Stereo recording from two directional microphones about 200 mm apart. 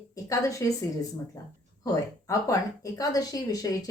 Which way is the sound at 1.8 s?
15° left (ahead or behind).